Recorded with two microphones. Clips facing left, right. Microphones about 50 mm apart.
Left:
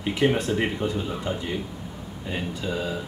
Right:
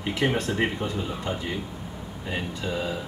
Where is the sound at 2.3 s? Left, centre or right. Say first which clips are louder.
Left 1 dB; centre.